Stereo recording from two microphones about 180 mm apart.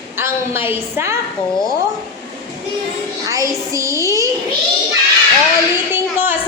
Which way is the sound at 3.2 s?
20° right (ahead or behind).